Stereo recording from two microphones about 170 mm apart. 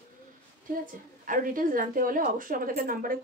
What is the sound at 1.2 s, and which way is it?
A woman's voice, 55° right (ahead or behind).